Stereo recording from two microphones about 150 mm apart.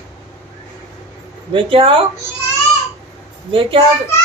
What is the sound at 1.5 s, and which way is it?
Speech, 35° right (ahead or behind).